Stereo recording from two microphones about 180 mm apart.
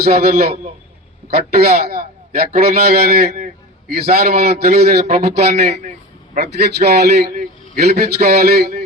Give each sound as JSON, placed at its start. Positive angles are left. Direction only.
{"t": 0.0, "sound": "a man's voice", "side_deg": -60}